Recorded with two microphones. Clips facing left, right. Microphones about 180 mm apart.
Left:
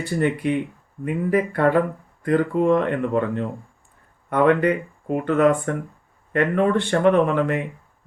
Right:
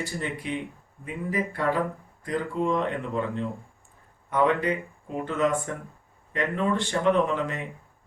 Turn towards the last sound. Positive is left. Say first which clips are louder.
# left 6 dB
turn(degrees=60)  # may be behind; listen again after turning